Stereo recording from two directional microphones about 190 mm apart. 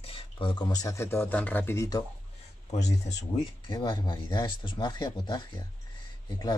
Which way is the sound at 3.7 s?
25° left (ahead or behind).